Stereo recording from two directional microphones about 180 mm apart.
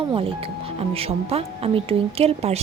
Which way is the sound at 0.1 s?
30° right (ahead or behind).